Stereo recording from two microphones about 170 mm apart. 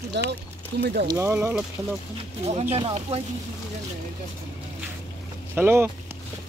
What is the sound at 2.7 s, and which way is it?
Speech, 35° right (ahead or behind).